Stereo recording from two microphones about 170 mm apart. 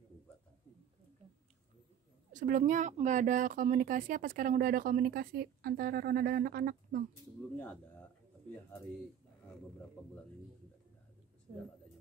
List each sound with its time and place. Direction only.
2.3 s speech: 50° right (ahead or behind)